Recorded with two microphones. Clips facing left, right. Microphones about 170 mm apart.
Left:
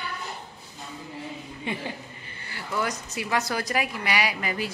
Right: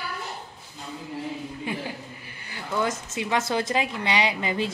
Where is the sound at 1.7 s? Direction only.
5° right (ahead or behind).